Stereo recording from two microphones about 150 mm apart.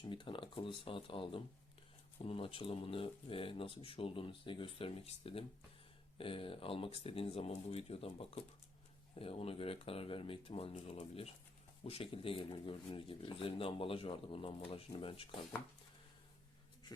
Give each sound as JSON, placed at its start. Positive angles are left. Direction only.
{"t": 0.0, "sound": "speech", "side_deg": 35}